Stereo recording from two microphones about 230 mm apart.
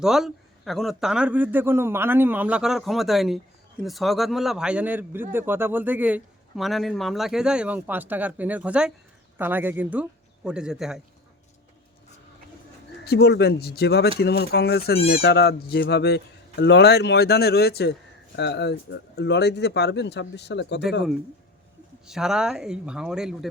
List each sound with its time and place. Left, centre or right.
0.0 s a man's voice: centre
13.1 s speech: left
22.0 s a man's voice: centre